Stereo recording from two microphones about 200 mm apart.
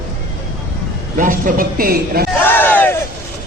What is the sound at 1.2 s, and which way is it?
A man's voice, 45° right (ahead or behind).